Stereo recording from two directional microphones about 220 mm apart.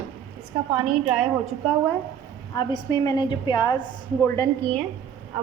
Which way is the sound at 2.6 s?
20° left (ahead or behind).